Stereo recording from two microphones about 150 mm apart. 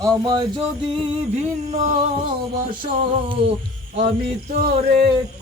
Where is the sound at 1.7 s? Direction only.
55° right (ahead or behind).